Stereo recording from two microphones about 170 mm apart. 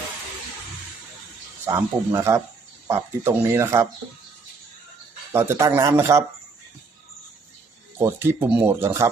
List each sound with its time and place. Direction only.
1.6 s speech: 15° right (ahead or behind)
5.3 s speech: 15° right (ahead or behind)
7.9 s speech: 15° right (ahead or behind)